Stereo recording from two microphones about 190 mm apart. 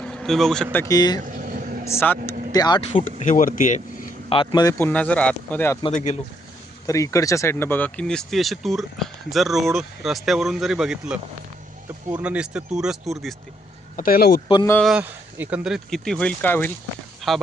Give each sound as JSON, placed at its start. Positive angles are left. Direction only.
{"t": 0.0, "sound": "a man's voice", "side_deg": 5}
{"t": 1.2, "sound": "vehicle", "side_deg": -45}
{"t": 1.9, "sound": "speech", "side_deg": 10}
{"t": 2.9, "sound": "speech", "side_deg": 40}
{"t": 4.3, "sound": "speech", "side_deg": 25}
{"t": 4.8, "sound": "speech", "side_deg": 10}
{"t": 6.8, "sound": "speech", "side_deg": 15}
{"t": 13.9, "sound": "speech", "side_deg": 50}
{"t": 14.4, "sound": "speech", "side_deg": 25}
{"t": 14.7, "sound": "speech", "side_deg": 5}
{"t": 14.9, "sound": "speech", "side_deg": -10}
{"t": 17.2, "sound": "speech", "side_deg": 0}